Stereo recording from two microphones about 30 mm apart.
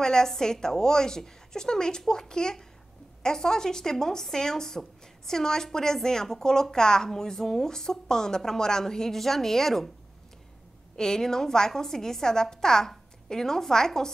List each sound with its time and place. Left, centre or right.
0.0 s a woman's voice: left
11.0 s a woman's voice: centre